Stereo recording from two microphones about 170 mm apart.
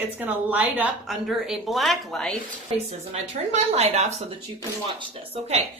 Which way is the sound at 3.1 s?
35° right (ahead or behind).